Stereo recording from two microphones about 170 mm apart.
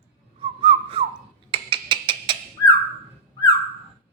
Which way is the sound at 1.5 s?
30° right (ahead or behind).